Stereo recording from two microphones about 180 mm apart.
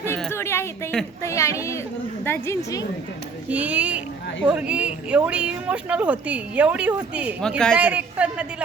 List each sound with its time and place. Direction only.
0.3 s a woman's voice: 15° left (ahead or behind)
3.5 s speech: 10° right (ahead or behind)